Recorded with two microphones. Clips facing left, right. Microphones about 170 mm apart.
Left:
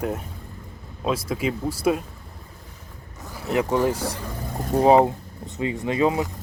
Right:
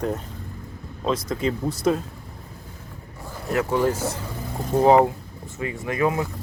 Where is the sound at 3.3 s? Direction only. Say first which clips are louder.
Left 1 dB; 15° left (ahead or behind).